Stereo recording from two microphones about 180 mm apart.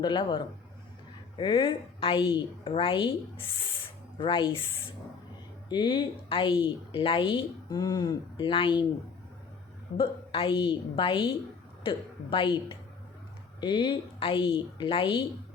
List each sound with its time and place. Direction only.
0.0 s a woman's voice: 25° left (ahead or behind)
1.4 s a woman's voice: 25° left (ahead or behind)
4.2 s a woman's voice: 25° left (ahead or behind)
5.6 s a woman's voice: 25° left (ahead or behind)
10.0 s a woman's voice: 30° left (ahead or behind)